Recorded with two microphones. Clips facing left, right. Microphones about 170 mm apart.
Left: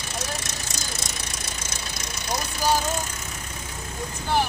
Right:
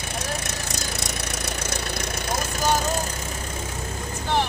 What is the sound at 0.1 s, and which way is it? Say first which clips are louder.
Engine knocking: right 2 dB; 55° right (ahead or behind).